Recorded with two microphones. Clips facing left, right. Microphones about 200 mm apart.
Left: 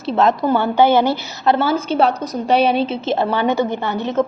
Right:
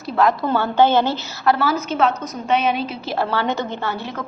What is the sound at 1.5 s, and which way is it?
A woman's voice, 30° left (ahead or behind).